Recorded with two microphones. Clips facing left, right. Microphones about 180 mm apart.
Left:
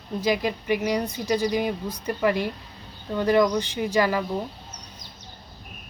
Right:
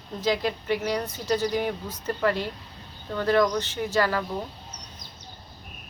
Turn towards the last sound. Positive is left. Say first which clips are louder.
# left 2 dB
turn(degrees=15)  # may be behind; listen again after turning